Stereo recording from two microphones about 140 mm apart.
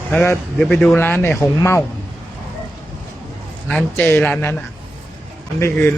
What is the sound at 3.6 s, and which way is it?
Speech, 10° left (ahead or behind).